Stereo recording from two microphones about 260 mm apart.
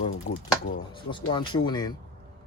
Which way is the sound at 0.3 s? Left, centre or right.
Left.